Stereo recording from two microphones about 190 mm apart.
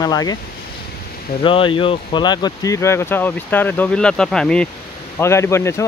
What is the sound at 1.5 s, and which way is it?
Speech, 25° left (ahead or behind).